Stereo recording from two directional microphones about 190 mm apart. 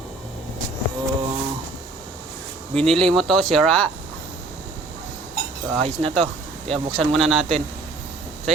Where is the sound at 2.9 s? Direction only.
Centre (ahead or behind).